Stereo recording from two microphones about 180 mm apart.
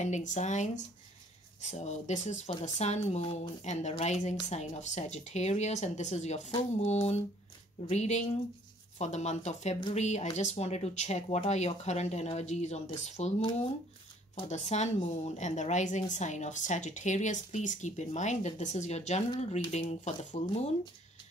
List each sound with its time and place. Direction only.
0.0 s a woman's voice: 40° left (ahead or behind)
14.5 s a woman's voice: 40° left (ahead or behind)